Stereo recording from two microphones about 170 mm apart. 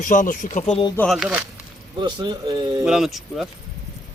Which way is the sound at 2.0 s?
25° right (ahead or behind).